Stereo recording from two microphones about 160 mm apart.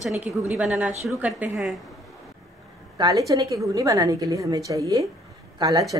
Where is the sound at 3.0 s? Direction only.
25° right (ahead or behind).